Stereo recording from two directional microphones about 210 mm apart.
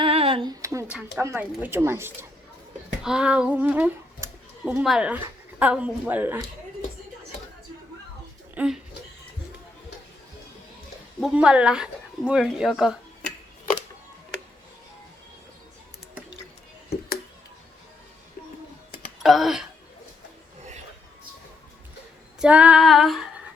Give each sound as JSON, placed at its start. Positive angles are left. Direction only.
{"t": 0.0, "sound": "a sound", "side_deg": -25}
{"t": 0.6, "sound": "a child's voice", "side_deg": -15}
{"t": 8.5, "sound": "speech", "side_deg": -5}
{"t": 11.2, "sound": "speech", "side_deg": -5}
{"t": 19.2, "sound": "a sound", "side_deg": 0}
{"t": 22.4, "sound": "speech", "side_deg": -5}